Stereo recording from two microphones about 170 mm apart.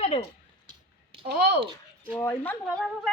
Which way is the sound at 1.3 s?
70° right (ahead or behind).